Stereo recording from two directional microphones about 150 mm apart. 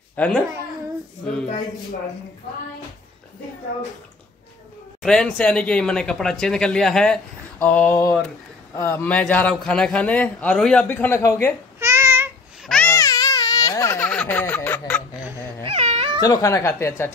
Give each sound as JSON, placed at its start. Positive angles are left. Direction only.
{"t": 0.1, "sound": "a child's voice", "side_deg": 10}
{"t": 5.0, "sound": "a man's voice", "side_deg": 5}
{"t": 11.8, "sound": "babbling", "side_deg": -20}
{"t": 12.6, "sound": "babbling", "side_deg": 5}
{"t": 12.9, "sound": "baby cry", "side_deg": 20}
{"t": 15.6, "sound": "cat", "side_deg": -45}
{"t": 16.2, "sound": "speech", "side_deg": 25}